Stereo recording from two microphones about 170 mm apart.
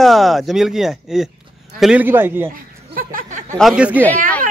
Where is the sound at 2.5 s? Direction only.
55° right (ahead or behind).